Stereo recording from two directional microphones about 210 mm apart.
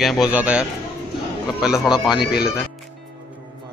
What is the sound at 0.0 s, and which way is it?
A man's voice, centre (ahead or behind).